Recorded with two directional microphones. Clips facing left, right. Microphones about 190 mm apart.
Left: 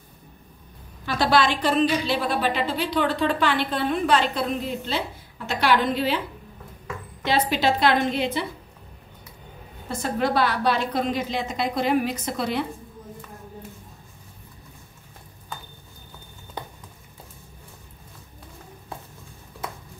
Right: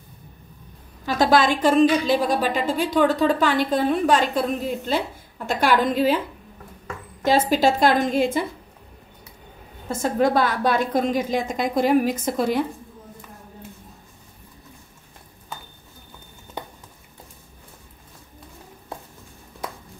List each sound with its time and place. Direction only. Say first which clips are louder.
1.0 s a woman's voice: right 3 dB; 45° right (ahead or behind)
7.2 s a woman's voice: right 4 dB; 45° right (ahead or behind)
9.8 s a woman's voice: right 4 dB; 45° right (ahead or behind)